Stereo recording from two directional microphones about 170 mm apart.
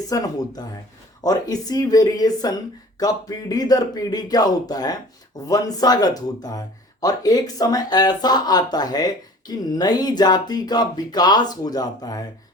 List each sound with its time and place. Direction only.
0.1 s speech: 20° left (ahead or behind)